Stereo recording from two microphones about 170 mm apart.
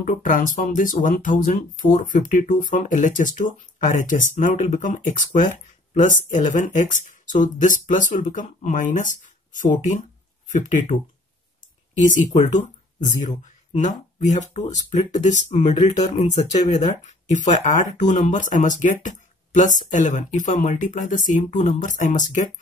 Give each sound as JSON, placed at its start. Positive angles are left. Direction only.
{"t": 0.0, "sound": "speech", "side_deg": 50}
{"t": 12.4, "sound": "speech", "side_deg": 45}